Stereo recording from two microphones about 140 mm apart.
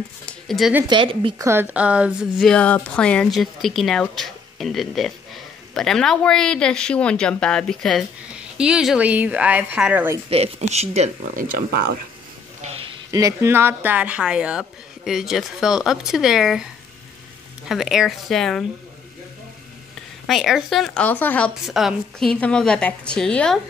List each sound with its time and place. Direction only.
0.3 s a sound: centre (ahead or behind)
0.8 s speech: 35° right (ahead or behind)
1.4 s a woman's voice: 15° right (ahead or behind)
10.3 s speech: 50° right (ahead or behind)
13.1 s a woman's voice: 20° right (ahead or behind); by 16.6 s 5° right (ahead or behind)
17.6 s a woman's voice: 5° right (ahead or behind)
20.2 s a woman's voice: centre (ahead or behind)
21.6 s a woman's voice: centre (ahead or behind)